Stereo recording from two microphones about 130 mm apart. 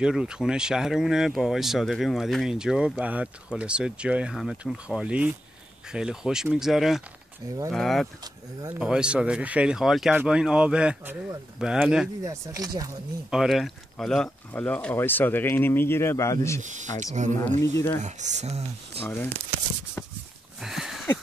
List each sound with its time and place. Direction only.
0.0 s speech: 5° right (ahead or behind)
12.2 s speech: 25° right (ahead or behind)
13.3 s speech: centre (ahead or behind); by 16.6 s 20° left (ahead or behind)
16.6 s speech: 70° right (ahead or behind)
17.6 s speech: 20° left (ahead or behind)
18.0 s speech: 65° right (ahead or behind)
19.0 s speech: 15° left (ahead or behind)
20.6 s a sound: 5° right (ahead or behind)